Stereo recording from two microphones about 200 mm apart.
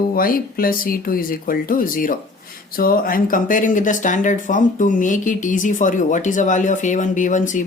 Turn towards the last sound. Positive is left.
turn(degrees=40)  # may be behind; listen again after turning